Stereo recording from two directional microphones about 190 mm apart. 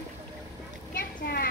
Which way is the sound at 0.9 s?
55° left (ahead or behind).